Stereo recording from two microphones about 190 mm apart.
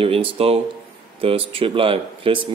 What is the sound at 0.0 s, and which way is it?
Speech, 30° right (ahead or behind).